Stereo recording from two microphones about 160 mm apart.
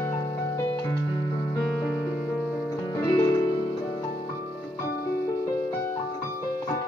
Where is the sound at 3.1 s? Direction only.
25° left (ahead or behind).